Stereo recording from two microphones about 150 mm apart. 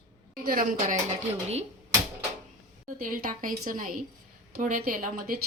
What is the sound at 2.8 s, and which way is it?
A woman's voice, 65° right (ahead or behind).